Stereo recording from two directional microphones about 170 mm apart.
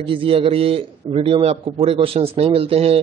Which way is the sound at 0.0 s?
30° right (ahead or behind).